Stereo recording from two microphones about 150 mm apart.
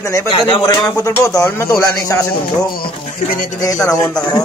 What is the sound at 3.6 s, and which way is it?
Speech, 25° left (ahead or behind).